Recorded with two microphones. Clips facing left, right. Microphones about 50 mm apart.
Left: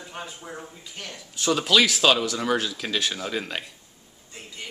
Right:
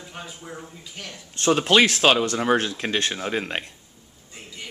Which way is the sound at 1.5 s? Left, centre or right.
Right.